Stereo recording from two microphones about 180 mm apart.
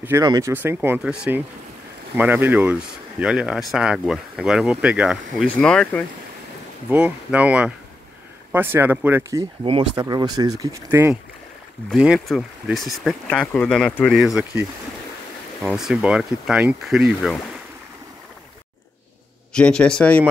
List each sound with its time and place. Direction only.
0.0 s speech: 15° right (ahead or behind); by 6.0 s 5° left (ahead or behind)
6.9 s speech: 5° right (ahead or behind)
11.9 s speech: centre (ahead or behind)
15.6 s speech: 5° right (ahead or behind)
19.5 s speech: 5° left (ahead or behind)